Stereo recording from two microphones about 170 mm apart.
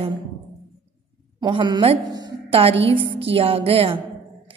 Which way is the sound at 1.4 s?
25° right (ahead or behind).